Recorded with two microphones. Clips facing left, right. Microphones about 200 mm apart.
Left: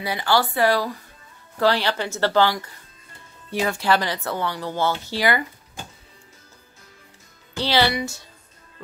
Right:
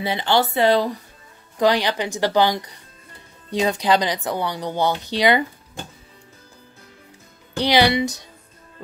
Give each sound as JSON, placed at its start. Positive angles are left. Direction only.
{"t": 0.0, "sound": "speech", "side_deg": -25}
{"t": 7.5, "sound": "speech", "side_deg": -15}